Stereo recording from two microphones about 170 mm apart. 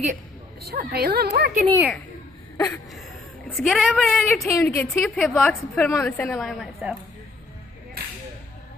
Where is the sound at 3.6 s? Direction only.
Centre (ahead or behind).